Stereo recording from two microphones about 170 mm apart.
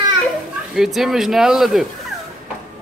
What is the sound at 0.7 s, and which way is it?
Speech, centre (ahead or behind).